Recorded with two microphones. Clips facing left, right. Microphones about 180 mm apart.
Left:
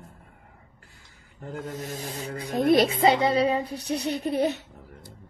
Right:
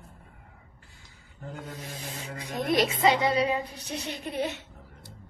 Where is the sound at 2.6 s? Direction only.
30° left (ahead or behind).